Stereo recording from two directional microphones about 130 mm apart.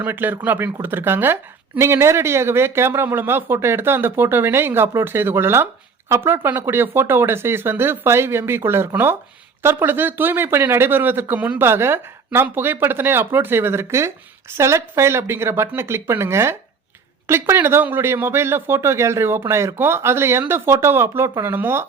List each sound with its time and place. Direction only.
0.0 s speech: 15° right (ahead or behind)